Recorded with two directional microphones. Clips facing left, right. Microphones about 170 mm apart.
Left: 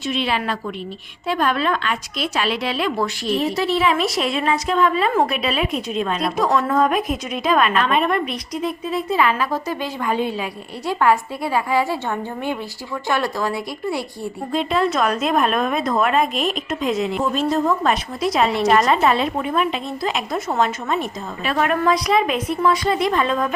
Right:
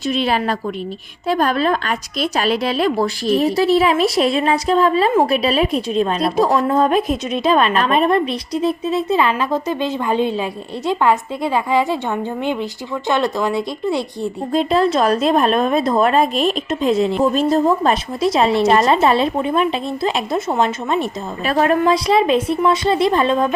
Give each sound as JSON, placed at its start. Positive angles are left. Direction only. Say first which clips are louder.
{"t": 0.1, "sound": "a woman's voice", "louder": "right 4 dB", "side_deg": -40}
{"t": 14.5, "sound": "a woman's voice", "louder": "right 4 dB", "side_deg": -35}